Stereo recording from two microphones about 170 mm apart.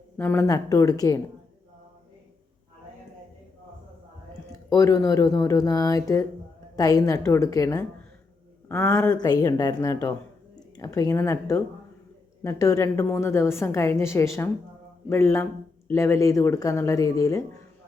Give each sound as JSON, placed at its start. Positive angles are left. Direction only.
{"t": 0.2, "sound": "speech", "side_deg": 15}
{"t": 4.7, "sound": "speech", "side_deg": 20}
{"t": 8.7, "sound": "a woman's voice", "side_deg": 10}
{"t": 9.1, "sound": "a woman's voice", "side_deg": 25}